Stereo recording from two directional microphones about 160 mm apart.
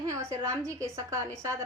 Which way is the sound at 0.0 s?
20° right (ahead or behind).